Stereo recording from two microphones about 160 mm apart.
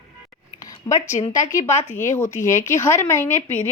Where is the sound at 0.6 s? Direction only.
20° left (ahead or behind).